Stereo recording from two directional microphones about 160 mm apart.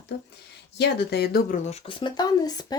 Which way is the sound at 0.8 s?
90° left.